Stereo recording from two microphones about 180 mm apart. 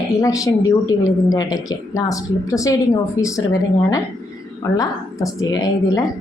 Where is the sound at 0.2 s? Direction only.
20° left (ahead or behind).